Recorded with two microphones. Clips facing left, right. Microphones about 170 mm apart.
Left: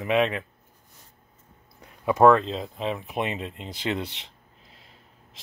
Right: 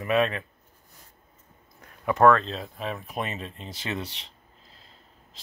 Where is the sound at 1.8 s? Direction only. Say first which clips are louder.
Left 2 dB; 15° left (ahead or behind).